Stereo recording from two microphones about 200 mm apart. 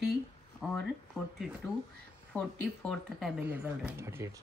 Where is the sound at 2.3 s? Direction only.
5° left (ahead or behind); by 4.3 s 15° right (ahead or behind).